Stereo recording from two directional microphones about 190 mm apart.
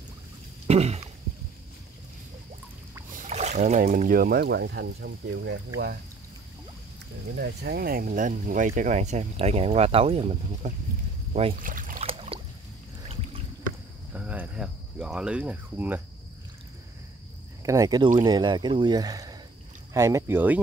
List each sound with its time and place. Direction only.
0.7 s speech: 35° right (ahead or behind)
3.3 s speech: 35° right (ahead or behind); by 5.6 s 60° right (ahead or behind)
7.3 s speech: 55° right (ahead or behind)
12.0 s a sound: 30° right (ahead or behind)
14.1 s cricket: 10° right (ahead or behind)
17.6 s speech: 20° right (ahead or behind)